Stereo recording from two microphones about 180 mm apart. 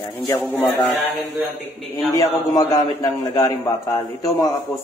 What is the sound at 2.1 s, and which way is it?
A man's voice, 20° left (ahead or behind).